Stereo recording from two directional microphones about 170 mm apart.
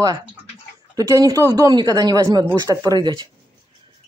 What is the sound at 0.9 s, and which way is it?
Speech, 20° right (ahead or behind).